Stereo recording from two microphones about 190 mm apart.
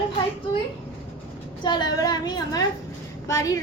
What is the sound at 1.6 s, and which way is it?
A woman's voice, 25° left (ahead or behind).